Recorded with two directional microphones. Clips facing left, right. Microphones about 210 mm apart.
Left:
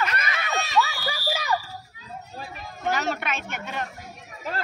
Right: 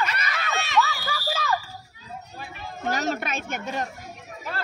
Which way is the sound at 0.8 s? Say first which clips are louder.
Right 1 dB; 15° left (ahead or behind).